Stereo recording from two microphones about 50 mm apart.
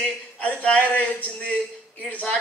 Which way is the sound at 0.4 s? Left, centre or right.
Left.